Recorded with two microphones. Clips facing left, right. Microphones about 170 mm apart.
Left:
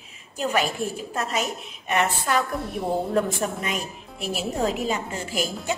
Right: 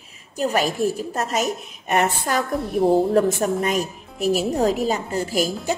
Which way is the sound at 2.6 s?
Centre (ahead or behind).